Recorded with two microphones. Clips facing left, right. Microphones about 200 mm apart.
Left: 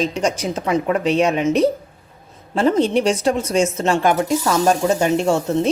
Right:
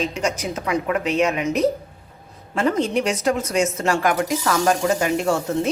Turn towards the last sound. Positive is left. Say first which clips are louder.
# left 3 dB
turn(degrees=25)  # may be behind; listen again after turning